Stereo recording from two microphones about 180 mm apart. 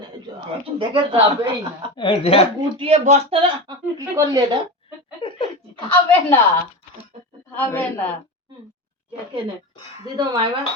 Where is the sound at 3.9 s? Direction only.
15° right (ahead or behind).